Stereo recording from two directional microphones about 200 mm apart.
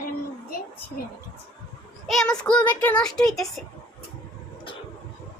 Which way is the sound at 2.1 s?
Centre (ahead or behind).